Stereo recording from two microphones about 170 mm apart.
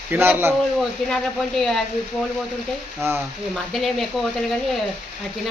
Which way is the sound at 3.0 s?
15° right (ahead or behind).